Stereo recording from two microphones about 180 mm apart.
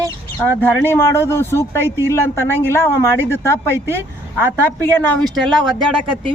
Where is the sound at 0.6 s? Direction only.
10° left (ahead or behind).